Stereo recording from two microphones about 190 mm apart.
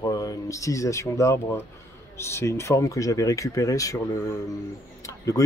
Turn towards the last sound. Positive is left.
turn(degrees=15)  # may be behind; listen again after turning